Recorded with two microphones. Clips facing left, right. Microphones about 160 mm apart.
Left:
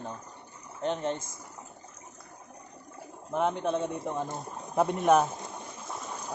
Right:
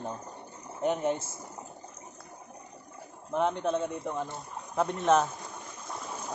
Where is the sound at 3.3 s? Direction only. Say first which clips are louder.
Even; centre (ahead or behind).